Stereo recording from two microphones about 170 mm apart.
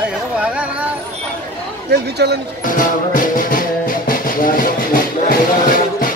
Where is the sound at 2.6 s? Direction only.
50° left (ahead or behind).